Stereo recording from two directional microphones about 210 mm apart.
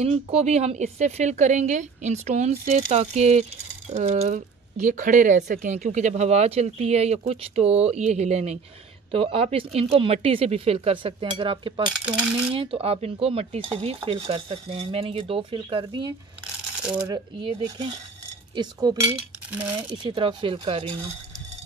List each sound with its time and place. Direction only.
0.0 s speech: 30° right (ahead or behind)
20.1 s speech: 25° right (ahead or behind)